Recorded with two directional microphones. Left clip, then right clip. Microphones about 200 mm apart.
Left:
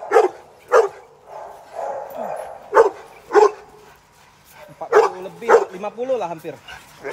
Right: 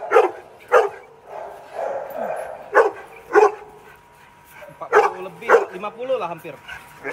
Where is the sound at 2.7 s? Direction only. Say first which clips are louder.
Left 2 dB; 40° left (ahead or behind).